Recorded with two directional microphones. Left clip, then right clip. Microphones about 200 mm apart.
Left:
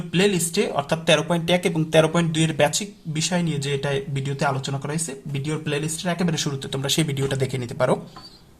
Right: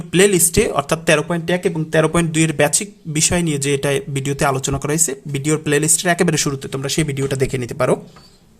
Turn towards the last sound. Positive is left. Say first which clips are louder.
# right 4 dB
turn(degrees=-35)  # may be behind; listen again after turning